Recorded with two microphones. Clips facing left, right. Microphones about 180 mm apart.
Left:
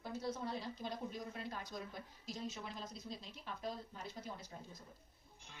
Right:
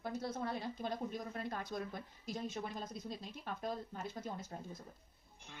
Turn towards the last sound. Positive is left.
turn(degrees=-50)  # may be behind; listen again after turning